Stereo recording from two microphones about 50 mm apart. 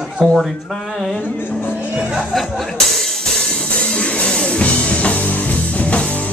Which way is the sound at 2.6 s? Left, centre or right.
Centre.